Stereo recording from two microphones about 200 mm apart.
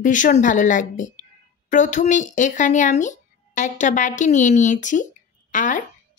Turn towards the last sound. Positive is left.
turn(degrees=40)  # may be behind; listen again after turning